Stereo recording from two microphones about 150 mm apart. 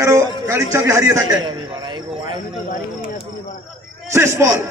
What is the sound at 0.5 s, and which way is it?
Speech, 20° right (ahead or behind).